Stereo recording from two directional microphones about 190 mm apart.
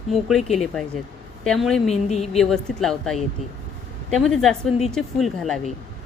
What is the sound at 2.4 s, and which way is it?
Speech, centre (ahead or behind).